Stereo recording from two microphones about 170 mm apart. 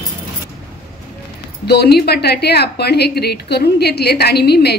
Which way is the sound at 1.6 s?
70° left (ahead or behind).